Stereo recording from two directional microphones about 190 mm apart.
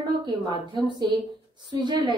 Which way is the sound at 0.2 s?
25° right (ahead or behind).